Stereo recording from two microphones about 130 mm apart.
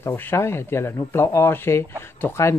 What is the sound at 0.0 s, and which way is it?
Speech, 15° left (ahead or behind).